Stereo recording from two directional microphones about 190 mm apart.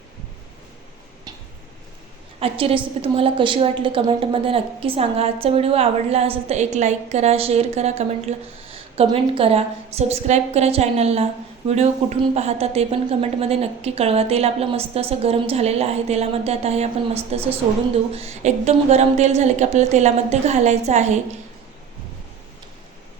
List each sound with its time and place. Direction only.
2.4 s a woman's voice: 30° right (ahead or behind)